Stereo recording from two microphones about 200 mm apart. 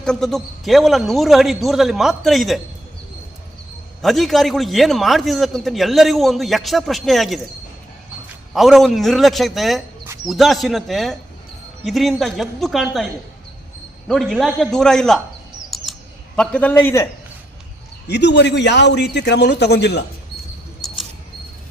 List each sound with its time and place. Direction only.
0.0 s a man's voice: 5° left (ahead or behind)
4.0 s a man's voice: centre (ahead or behind)
8.5 s a man's voice: centre (ahead or behind)
14.1 s a man's voice: centre (ahead or behind)
15.7 s chirp: centre (ahead or behind)
18.1 s a man's voice: 60° left (ahead or behind)